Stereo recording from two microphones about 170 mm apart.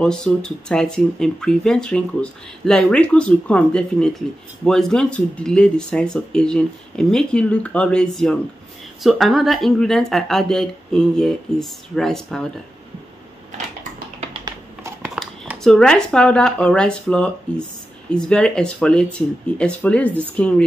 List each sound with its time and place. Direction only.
0.0 s speech: 5° left (ahead or behind)
14.4 s typing: 15° right (ahead or behind)
15.0 s speech: centre (ahead or behind)